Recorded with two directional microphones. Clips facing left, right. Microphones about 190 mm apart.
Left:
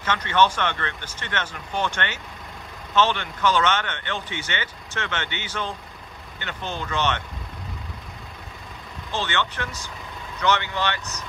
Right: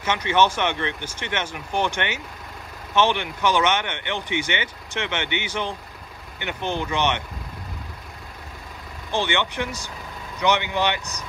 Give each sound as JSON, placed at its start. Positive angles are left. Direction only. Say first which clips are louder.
{"t": 0.0, "sound": "speech", "louder": "right 1 dB", "side_deg": -10}
{"t": 9.1, "sound": "speech", "louder": "right 3 dB", "side_deg": -15}